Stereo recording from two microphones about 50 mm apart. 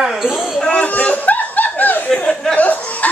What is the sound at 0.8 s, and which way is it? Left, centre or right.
Chuckle, left.